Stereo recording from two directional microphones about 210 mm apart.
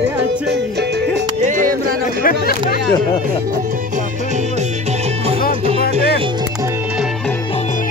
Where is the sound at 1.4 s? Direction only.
35° right (ahead or behind).